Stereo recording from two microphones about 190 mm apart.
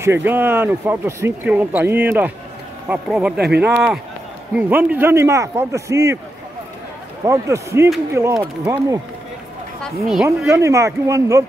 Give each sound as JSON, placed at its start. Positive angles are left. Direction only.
{"t": 0.0, "sound": "speech", "side_deg": -10}
{"t": 7.2, "sound": "speech", "side_deg": -15}
{"t": 10.2, "sound": "speech", "side_deg": -15}